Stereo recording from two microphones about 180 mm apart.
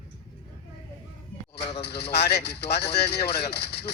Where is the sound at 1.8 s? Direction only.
65° left (ahead or behind).